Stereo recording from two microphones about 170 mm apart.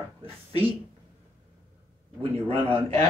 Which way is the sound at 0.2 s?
30° right (ahead or behind).